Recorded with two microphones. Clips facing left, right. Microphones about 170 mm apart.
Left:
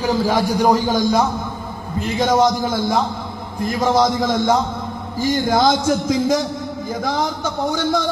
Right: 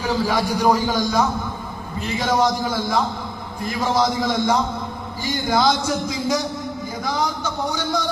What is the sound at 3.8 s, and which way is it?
A man's voice, 45° left (ahead or behind).